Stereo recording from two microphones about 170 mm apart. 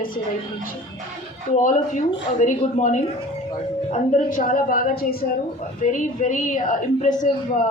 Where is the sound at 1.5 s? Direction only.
50° left (ahead or behind).